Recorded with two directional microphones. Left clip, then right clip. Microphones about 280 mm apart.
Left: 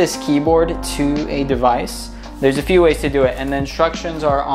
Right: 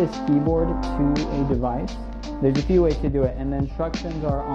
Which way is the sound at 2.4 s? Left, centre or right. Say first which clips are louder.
Left 7 dB; centre.